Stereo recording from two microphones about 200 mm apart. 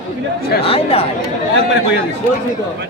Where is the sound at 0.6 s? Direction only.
30° left (ahead or behind).